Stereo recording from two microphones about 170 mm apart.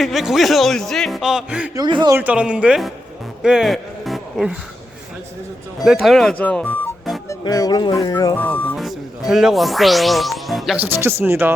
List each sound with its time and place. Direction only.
0.0 s a man's voice: centre (ahead or behind)
1.7 s speech: 25° right (ahead or behind)
2.1 s speech: 10° right (ahead or behind)
3.4 s music: centre (ahead or behind)
5.8 s a man's voice: centre (ahead or behind)
7.3 s music: 20° left (ahead or behind)
8.7 s speech: centre (ahead or behind)
10.8 s speech: 10° right (ahead or behind)